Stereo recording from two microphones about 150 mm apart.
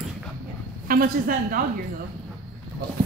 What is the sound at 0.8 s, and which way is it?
Speech, 75° right (ahead or behind).